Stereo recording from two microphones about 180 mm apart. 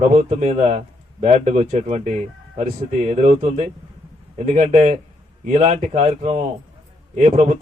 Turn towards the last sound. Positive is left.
turn(degrees=-40)  # may be behind; listen again after turning